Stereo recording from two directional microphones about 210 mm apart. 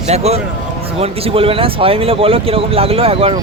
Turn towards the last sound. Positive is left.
turn(degrees=-25)  # may be behind; listen again after turning